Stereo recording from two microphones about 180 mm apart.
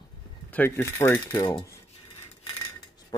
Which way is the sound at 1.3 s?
25° left (ahead or behind).